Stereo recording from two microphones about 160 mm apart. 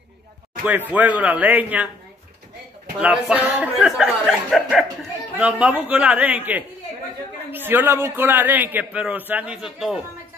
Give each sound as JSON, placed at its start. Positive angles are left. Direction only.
{"t": 0.7, "sound": "a man's voice", "side_deg": -10}
{"t": 3.0, "sound": "a man's voice", "side_deg": -5}